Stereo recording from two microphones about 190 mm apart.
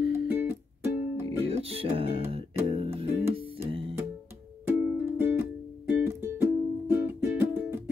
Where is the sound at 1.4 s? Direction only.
30° right (ahead or behind).